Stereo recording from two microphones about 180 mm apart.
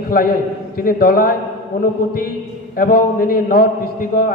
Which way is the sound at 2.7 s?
55° left (ahead or behind).